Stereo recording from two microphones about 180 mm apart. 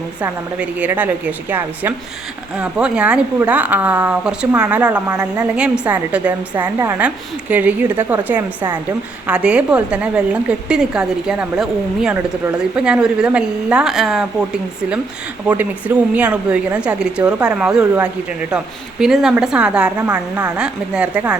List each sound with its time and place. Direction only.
0.2 s a woman's voice: 10° right (ahead or behind)
16.1 s a woman's voice: 5° right (ahead or behind)